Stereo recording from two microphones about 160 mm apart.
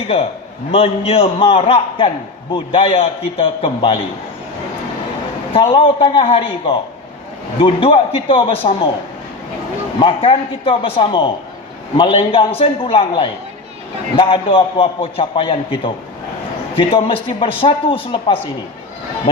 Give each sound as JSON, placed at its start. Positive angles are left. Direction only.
{"t": 0.7, "sound": "a man's voice", "side_deg": 40}
{"t": 5.5, "sound": "a man's voice", "side_deg": 35}
{"t": 10.0, "sound": "a man's voice", "side_deg": 35}